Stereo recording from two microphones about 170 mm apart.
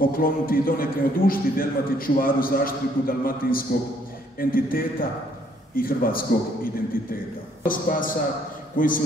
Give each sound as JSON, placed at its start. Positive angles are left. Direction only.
{"t": 0.0, "sound": "a man's voice", "side_deg": 60}